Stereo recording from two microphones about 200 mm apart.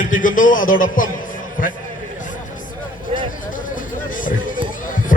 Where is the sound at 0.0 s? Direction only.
40° left (ahead or behind).